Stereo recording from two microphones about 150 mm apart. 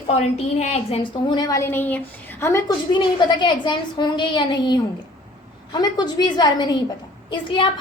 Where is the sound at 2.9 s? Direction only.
30° left (ahead or behind).